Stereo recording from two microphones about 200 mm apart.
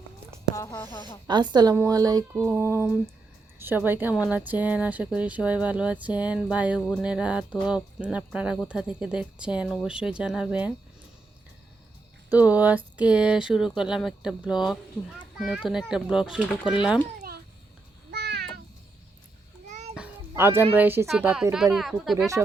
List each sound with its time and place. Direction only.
0.5 s speech: 15° left (ahead or behind)
1.3 s a woman's voice: 20° right (ahead or behind); by 10.8 s 5° right (ahead or behind)
12.3 s speech: 10° right (ahead or behind)
18.1 s cat: 55° right (ahead or behind)
19.9 s a sound: 10° right (ahead or behind)
20.7 s a woman's voice: 10° right (ahead or behind)